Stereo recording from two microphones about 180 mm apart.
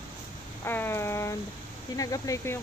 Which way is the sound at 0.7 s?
10° left (ahead or behind).